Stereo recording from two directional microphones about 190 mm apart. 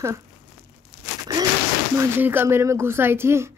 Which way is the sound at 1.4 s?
20° right (ahead or behind).